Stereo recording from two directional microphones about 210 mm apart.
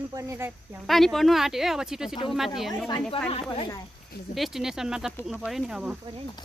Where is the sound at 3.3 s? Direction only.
25° left (ahead or behind).